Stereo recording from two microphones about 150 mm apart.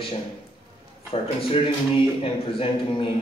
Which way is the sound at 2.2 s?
35° left (ahead or behind).